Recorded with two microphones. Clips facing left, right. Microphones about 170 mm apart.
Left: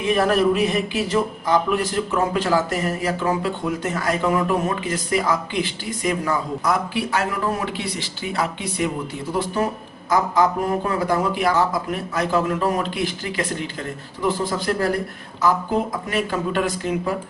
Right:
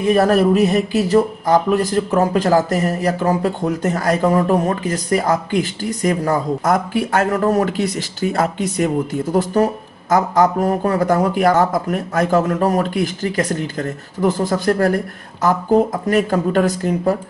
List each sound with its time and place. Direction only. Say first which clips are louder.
0.0 s speech: right 4 dB; 40° right (ahead or behind)